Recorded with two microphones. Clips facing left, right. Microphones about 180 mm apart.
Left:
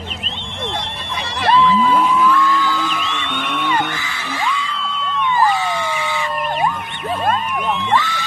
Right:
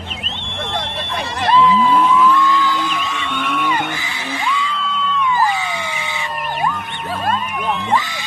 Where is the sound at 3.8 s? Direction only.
20° right (ahead or behind).